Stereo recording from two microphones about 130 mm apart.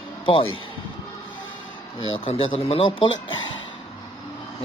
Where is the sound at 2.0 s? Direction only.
45° left (ahead or behind).